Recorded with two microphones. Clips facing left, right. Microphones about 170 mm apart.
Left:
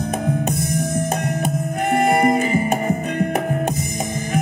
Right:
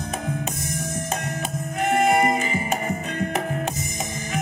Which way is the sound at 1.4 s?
55° left (ahead or behind).